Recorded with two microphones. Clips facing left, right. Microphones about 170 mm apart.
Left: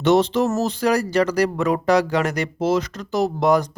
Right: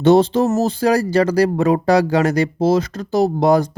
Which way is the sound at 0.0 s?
35° right (ahead or behind).